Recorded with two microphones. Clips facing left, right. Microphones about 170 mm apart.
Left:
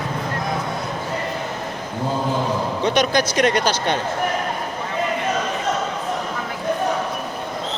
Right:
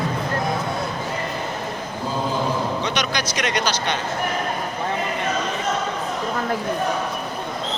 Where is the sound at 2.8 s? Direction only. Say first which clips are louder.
Left 6 dB; 50° left (ahead or behind).